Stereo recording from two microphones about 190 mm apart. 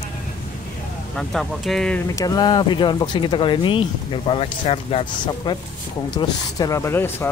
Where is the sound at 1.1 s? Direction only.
Centre (ahead or behind).